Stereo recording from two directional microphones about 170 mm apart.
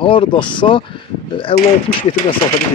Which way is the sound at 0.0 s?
30° left (ahead or behind).